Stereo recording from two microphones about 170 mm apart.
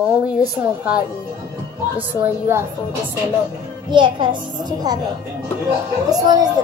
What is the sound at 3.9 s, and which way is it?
A woman's voice, 30° right (ahead or behind).